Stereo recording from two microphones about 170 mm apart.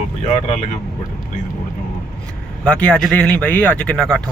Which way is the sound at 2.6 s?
5° left (ahead or behind).